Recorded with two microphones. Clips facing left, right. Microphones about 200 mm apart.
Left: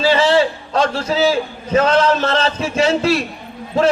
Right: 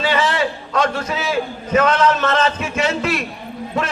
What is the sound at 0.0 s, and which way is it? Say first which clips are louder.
A man's voice: left 5 dB; 30° left (ahead or behind).